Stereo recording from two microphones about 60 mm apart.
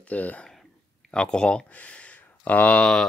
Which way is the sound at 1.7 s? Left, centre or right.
Left.